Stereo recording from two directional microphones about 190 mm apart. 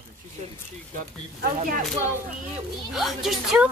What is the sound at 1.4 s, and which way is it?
Speech, 50° right (ahead or behind).